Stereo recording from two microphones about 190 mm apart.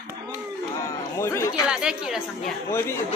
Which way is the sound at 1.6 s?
5° right (ahead or behind).